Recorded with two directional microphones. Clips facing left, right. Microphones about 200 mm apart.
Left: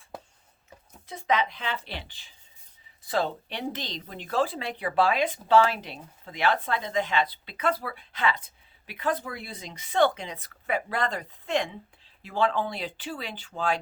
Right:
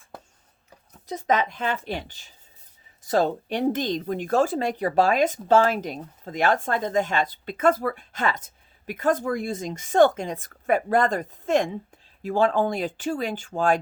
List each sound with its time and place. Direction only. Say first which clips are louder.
1.0 s speech: right 3 dB; 45° right (ahead or behind)